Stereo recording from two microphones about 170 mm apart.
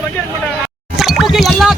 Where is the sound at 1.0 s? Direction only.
Centre (ahead or behind).